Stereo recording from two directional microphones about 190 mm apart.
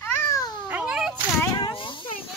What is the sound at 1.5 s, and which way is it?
Speech, 25° left (ahead or behind).